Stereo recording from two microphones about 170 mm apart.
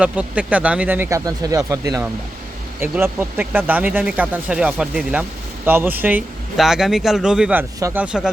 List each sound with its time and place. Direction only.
0.0 s speech: 10° right (ahead or behind)
7.8 s speech: 20° right (ahead or behind)
8.0 s speech: 5° right (ahead or behind)